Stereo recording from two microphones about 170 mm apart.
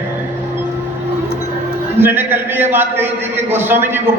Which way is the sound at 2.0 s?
10° right (ahead or behind).